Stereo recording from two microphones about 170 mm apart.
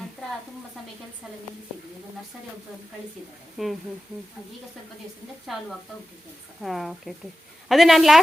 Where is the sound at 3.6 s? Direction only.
Centre (ahead or behind).